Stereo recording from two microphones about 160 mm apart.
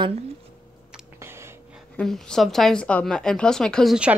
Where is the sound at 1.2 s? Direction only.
15° right (ahead or behind).